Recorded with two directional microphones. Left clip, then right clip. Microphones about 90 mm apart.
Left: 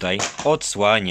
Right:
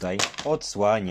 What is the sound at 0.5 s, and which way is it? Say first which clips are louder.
Speech: left 4 dB; 60° left (ahead or behind).